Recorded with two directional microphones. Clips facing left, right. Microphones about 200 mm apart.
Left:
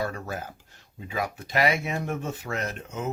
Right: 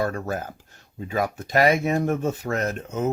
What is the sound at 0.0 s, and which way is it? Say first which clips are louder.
Speech: right 5 dB; 45° right (ahead or behind).